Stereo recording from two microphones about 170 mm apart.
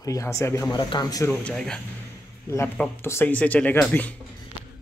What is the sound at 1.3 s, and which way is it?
Speech, 5° left (ahead or behind).